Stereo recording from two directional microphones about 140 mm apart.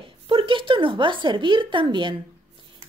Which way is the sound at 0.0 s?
40° right (ahead or behind).